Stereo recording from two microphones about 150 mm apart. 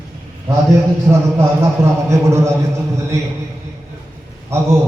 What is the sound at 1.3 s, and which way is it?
A man's voice, 20° right (ahead or behind).